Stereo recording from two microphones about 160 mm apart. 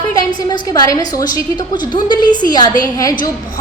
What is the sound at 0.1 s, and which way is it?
A woman's voice, 25° left (ahead or behind).